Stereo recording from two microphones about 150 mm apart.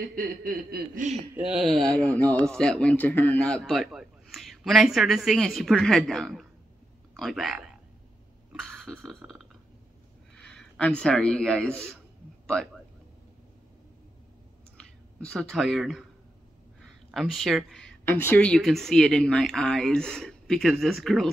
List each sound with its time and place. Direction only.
0.1 s a sound: 70° right (ahead or behind)
1.3 s speech: 5° right (ahead or behind)
8.5 s burping: centre (ahead or behind)
10.3 s speech: 5° left (ahead or behind)
14.8 s speech: 5° left (ahead or behind)